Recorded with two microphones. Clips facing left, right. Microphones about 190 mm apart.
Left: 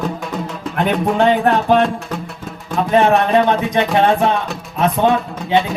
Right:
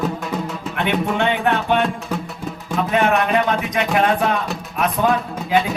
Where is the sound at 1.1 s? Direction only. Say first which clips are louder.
Left 8 dB; 35° left (ahead or behind).